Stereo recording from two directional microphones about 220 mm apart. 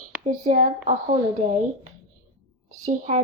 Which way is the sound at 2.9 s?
35° right (ahead or behind).